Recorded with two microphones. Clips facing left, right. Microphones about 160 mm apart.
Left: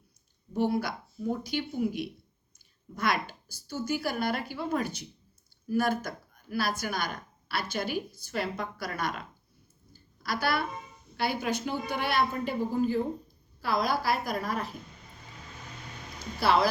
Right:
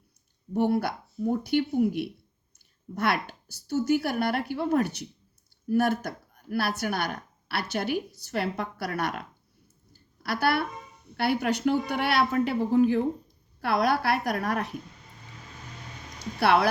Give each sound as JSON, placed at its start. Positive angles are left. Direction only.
{"t": 0.5, "sound": "speech", "side_deg": -60}
{"t": 10.4, "sound": "a woman's voice", "side_deg": -65}
{"t": 16.1, "sound": "a sound", "side_deg": -70}